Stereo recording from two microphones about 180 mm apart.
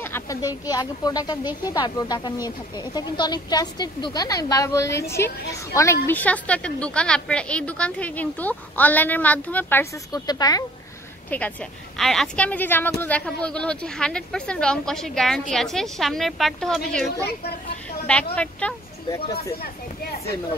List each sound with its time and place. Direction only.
0.0 s a woman's voice: 15° left (ahead or behind)
11.2 s a woman's voice: 10° left (ahead or behind)
18.3 s a woman's voice: 5° left (ahead or behind)
19.6 s speech: 60° left (ahead or behind)